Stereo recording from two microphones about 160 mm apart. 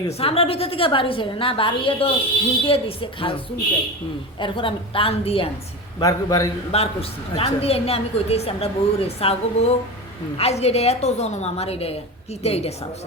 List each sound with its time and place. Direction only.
0.1 s a woman's voice: 35° left (ahead or behind)
6.0 s a man's voice: 20° left (ahead or behind)
6.7 s a woman's voice: 40° left (ahead or behind)